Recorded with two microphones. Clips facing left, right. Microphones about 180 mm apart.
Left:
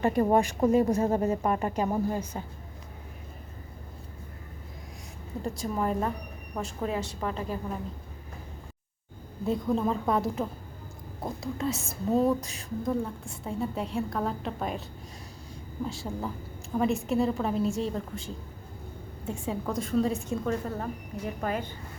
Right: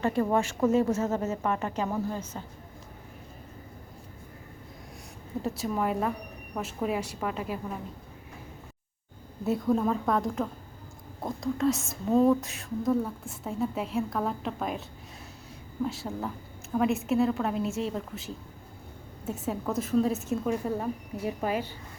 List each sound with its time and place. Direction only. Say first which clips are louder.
0.0 s speech: left 2 dB; 15° left (ahead or behind)
5.4 s a woman's voice: right 1 dB; 5° right (ahead or behind)
9.4 s a woman's voice: right 1 dB; 5° right (ahead or behind)
15.9 s a woman's voice: even; centre (ahead or behind)